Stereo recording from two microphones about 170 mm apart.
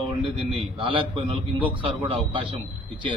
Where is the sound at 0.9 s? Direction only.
30° right (ahead or behind).